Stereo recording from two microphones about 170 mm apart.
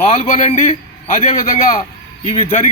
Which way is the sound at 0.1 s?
40° left (ahead or behind).